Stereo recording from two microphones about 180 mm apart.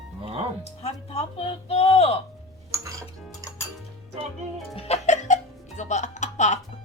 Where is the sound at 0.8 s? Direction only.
35° left (ahead or behind).